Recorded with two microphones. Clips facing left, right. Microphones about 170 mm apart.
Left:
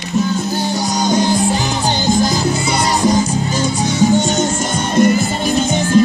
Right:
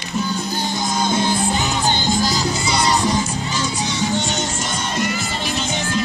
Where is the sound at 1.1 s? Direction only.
40° left (ahead or behind).